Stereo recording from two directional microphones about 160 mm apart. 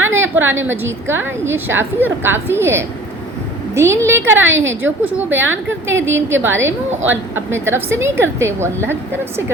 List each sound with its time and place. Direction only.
0.0 s a woman's voice: 15° right (ahead or behind)